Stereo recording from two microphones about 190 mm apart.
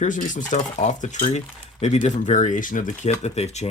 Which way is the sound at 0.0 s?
40° left (ahead or behind).